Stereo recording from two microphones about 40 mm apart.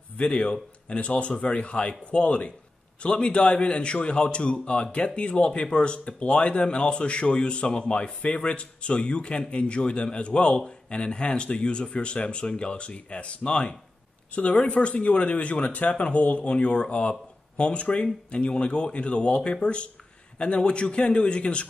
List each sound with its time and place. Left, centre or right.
0.2 s a man's voice: left